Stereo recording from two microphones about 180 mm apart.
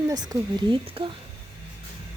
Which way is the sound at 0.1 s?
20° right (ahead or behind).